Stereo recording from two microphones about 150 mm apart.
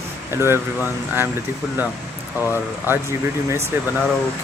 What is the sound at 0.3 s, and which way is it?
Speech, 15° right (ahead or behind).